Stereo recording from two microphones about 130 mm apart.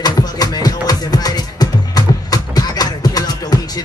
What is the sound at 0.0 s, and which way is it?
Music, 30° left (ahead or behind).